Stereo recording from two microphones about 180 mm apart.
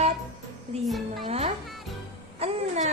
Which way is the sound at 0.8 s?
Centre (ahead or behind).